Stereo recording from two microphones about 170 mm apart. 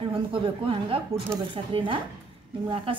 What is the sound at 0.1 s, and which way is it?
Speech, 30° right (ahead or behind).